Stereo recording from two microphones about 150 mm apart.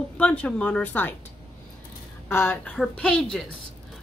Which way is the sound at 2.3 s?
15° left (ahead or behind).